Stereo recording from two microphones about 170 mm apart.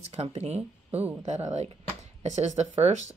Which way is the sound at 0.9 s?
10° right (ahead or behind).